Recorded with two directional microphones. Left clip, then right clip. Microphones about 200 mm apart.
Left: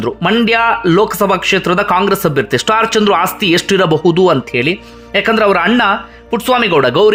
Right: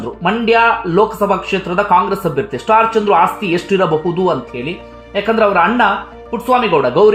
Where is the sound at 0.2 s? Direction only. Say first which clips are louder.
Right 1 dB; 20° left (ahead or behind).